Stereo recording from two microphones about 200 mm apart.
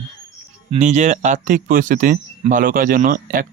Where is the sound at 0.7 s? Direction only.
35° right (ahead or behind).